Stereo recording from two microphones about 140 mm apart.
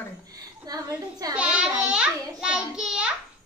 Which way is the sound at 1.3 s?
10° right (ahead or behind).